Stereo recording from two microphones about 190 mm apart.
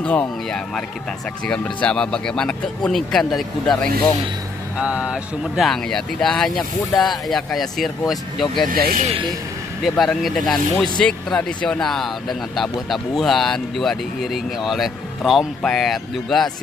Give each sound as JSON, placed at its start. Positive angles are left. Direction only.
{"t": 0.0, "sound": "speech", "side_deg": 5}
{"t": 8.6, "sound": "speech", "side_deg": -45}
{"t": 9.8, "sound": "speech", "side_deg": 0}